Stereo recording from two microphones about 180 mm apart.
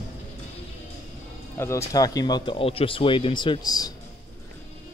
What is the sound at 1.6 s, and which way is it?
Speech, 15° left (ahead or behind).